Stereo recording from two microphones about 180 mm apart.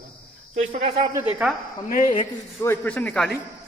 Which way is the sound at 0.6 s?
40° right (ahead or behind).